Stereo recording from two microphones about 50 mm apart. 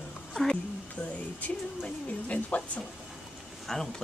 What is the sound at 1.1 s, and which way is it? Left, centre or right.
Speech, left.